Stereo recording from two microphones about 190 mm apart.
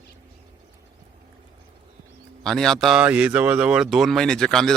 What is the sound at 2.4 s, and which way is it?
Speech, centre (ahead or behind).